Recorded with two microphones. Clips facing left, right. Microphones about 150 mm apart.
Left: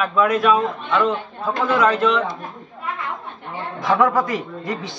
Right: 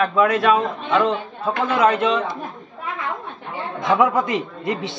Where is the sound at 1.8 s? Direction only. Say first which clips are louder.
Even; 25° right (ahead or behind).